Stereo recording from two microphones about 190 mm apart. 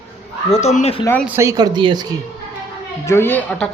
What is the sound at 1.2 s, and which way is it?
Speech, 15° right (ahead or behind).